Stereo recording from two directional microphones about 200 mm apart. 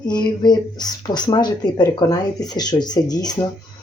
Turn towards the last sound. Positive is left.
turn(degrees=20)  # may be behind; listen again after turning